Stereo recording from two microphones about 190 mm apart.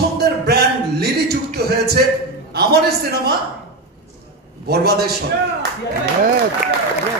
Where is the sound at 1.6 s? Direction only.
55° right (ahead or behind).